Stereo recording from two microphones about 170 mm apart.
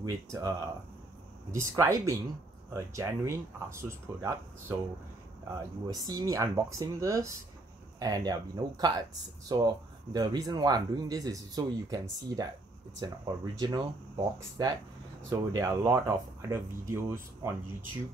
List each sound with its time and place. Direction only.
0.0 s speech: 20° right (ahead or behind)